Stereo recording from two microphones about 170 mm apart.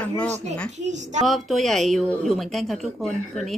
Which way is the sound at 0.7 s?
45° right (ahead or behind).